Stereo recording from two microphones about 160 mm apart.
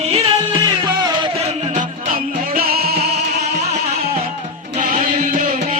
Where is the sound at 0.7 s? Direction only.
25° right (ahead or behind); by 3.5 s 80° right.